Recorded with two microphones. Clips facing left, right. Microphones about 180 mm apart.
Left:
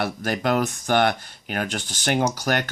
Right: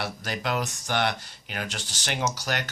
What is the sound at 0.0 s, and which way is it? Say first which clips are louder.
Speech: left 7 dB; 50° left (ahead or behind).